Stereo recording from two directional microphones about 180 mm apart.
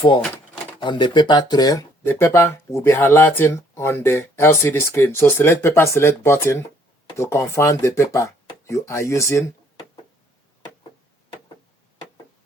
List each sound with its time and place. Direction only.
0.8 s speech: 25° left (ahead or behind)